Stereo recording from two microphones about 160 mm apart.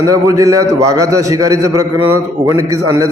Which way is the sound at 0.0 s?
20° right (ahead or behind).